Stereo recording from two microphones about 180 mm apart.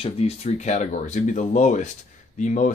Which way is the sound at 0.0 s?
35° left (ahead or behind).